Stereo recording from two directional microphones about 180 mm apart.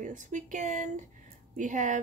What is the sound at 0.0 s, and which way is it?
Speech, 45° right (ahead or behind).